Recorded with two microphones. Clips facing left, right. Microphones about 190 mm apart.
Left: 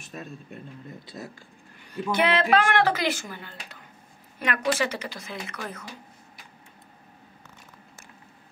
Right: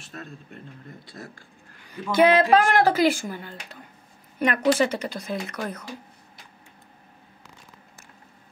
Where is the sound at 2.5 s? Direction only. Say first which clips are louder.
Right 3 dB; 40° right (ahead or behind).